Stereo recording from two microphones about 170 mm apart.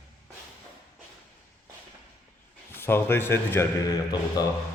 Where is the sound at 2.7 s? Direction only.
15° left (ahead or behind).